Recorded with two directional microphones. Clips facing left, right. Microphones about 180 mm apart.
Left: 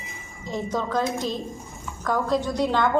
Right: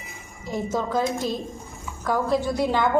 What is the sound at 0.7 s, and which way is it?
Speech, 5° right (ahead or behind).